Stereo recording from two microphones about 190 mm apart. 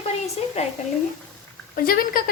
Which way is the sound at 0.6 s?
35° left (ahead or behind).